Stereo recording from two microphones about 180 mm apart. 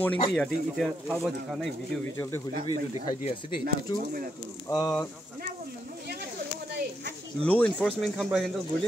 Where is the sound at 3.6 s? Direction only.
55° right (ahead or behind).